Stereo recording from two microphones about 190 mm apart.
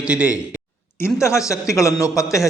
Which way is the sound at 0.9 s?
15° left (ahead or behind).